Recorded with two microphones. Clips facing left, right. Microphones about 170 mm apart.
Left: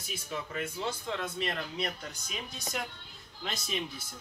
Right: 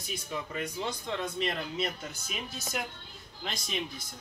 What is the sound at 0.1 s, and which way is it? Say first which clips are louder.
Speech: right 1 dB; 5° left (ahead or behind).